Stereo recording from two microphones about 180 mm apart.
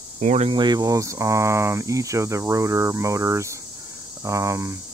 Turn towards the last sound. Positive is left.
turn(degrees=-15)  # may be behind; listen again after turning